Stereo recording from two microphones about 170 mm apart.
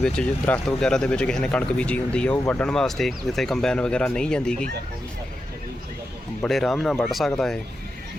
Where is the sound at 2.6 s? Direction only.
5° left (ahead or behind).